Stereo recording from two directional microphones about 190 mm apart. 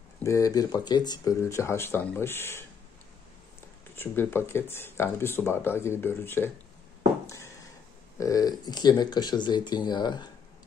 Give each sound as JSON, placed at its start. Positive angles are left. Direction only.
{"t": 0.2, "sound": "speech", "side_deg": 15}
{"t": 3.9, "sound": "speech", "side_deg": 10}
{"t": 7.2, "sound": "a sound", "side_deg": 15}
{"t": 8.2, "sound": "speech", "side_deg": 20}